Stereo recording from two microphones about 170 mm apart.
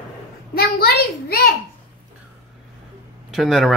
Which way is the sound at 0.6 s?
70° left (ahead or behind).